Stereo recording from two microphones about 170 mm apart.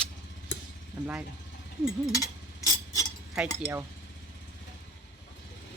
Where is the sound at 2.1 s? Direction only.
20° left (ahead or behind).